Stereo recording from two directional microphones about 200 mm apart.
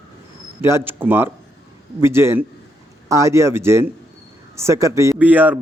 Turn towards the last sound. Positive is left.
turn(degrees=-10)  # may be behind; listen again after turning